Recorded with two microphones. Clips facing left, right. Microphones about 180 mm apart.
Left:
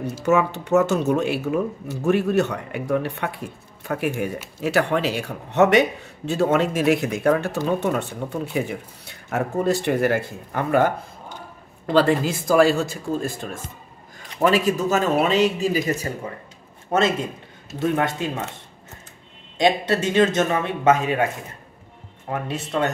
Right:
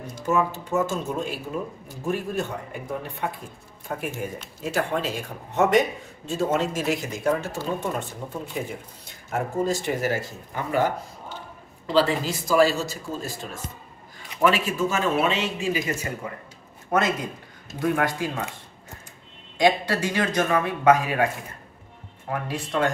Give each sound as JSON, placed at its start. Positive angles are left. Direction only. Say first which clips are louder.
{"t": 0.2, "sound": "a man's voice", "louder": "left 4 dB", "side_deg": 75}
{"t": 14.4, "sound": "speech", "louder": "left 3 dB", "side_deg": 40}
{"t": 17.7, "sound": "a man's voice", "louder": "left 2 dB", "side_deg": 25}
{"t": 19.6, "sound": "a man's voice", "louder": "left 2 dB", "side_deg": 25}
{"t": 22.5, "sound": "a man's voice", "louder": "left 1 dB", "side_deg": 25}